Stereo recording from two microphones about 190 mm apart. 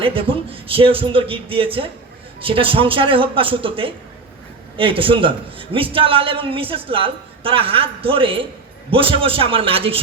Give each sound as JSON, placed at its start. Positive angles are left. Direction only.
{"t": 0.0, "sound": "a man's voice", "side_deg": -30}